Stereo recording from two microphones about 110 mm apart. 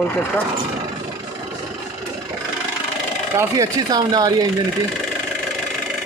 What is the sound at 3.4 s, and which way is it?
Speech, 30° right (ahead or behind).